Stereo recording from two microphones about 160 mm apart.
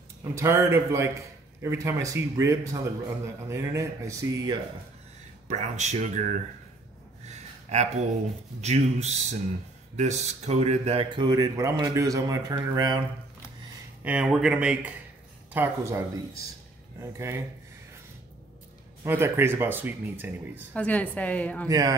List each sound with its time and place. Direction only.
0.2 s speech: 20° right (ahead or behind)
5.5 s speech: 45° right (ahead or behind)
7.2 s a sound: 45° right (ahead or behind)
8.5 s speech: 45° right (ahead or behind); by 13.0 s 25° right (ahead or behind)
14.0 s speech: 5° right (ahead or behind)
19.0 s speech: 15° right (ahead or behind)
20.7 s a woman's voice: 10° left (ahead or behind)
21.6 s speech: 25° right (ahead or behind)